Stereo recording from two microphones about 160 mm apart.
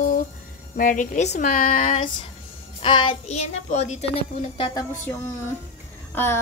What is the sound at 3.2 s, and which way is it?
Speech, 45° left (ahead or behind).